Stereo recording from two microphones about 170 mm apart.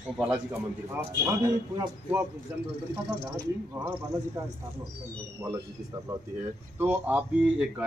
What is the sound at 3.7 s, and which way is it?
Music, 15° right (ahead or behind).